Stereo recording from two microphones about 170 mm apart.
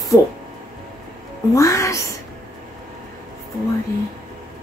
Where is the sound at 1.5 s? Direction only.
20° left (ahead or behind).